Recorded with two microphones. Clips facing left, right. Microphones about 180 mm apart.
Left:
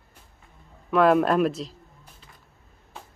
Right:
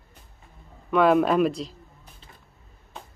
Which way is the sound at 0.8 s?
Centre (ahead or behind).